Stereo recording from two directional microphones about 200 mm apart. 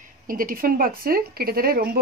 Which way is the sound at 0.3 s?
45° right (ahead or behind).